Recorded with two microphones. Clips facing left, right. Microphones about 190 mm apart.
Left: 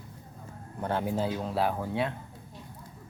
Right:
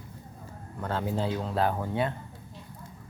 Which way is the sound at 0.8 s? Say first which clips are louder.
Left 1 dB; 15° left (ahead or behind).